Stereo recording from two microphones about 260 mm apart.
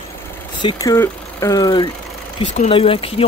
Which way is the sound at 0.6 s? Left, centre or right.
Centre.